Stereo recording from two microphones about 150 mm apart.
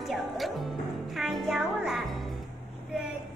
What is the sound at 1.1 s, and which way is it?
A woman's voice, centre (ahead or behind).